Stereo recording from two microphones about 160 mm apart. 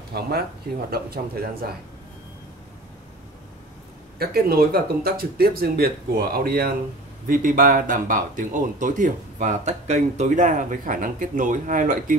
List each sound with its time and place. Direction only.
0.1 s speech: 75° right (ahead or behind)
4.2 s speech: 70° right (ahead or behind)